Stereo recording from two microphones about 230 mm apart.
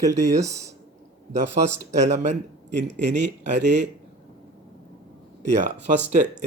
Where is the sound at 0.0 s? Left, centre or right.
Centre.